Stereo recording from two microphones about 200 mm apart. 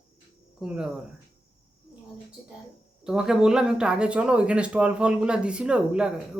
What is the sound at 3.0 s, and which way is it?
Speech, 5° right (ahead or behind).